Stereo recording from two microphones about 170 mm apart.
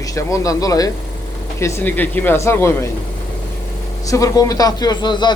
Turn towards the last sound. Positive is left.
turn(degrees=25)  # may be behind; listen again after turning